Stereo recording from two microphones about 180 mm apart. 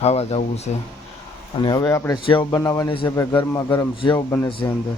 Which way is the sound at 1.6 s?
20° left (ahead or behind).